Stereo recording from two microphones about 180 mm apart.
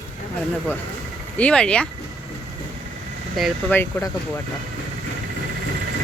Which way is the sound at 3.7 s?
10° left (ahead or behind).